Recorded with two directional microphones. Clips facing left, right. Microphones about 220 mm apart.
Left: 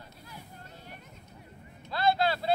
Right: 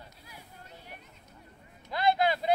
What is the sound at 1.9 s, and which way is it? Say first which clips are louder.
Vehicle: even; 15° right (ahead or behind).